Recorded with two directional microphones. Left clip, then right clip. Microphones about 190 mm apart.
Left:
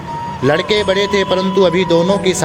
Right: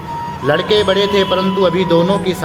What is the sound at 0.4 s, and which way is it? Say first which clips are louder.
Speech: right 1 dB; 30° left (ahead or behind).